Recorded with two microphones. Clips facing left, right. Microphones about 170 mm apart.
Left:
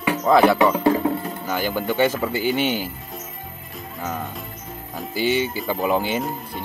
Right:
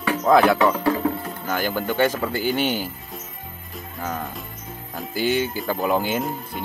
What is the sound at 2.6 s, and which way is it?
Speech, 40° right (ahead or behind).